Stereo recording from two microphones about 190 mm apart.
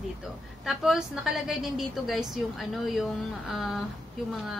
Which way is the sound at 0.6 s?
5° right (ahead or behind).